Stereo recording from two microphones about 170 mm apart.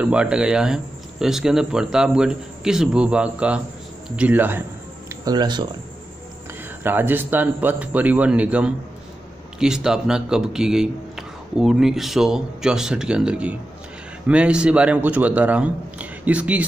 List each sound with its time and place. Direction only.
0.0 s a man's voice: 5° right (ahead or behind)
5.2 s speech: 25° right (ahead or behind)
6.8 s a man's voice: 10° right (ahead or behind)